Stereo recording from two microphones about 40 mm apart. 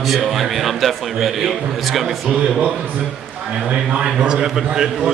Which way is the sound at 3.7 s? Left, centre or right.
Right.